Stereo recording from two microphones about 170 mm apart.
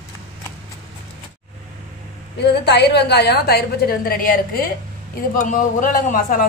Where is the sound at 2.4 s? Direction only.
80° left; by 6.4 s 55° left (ahead or behind).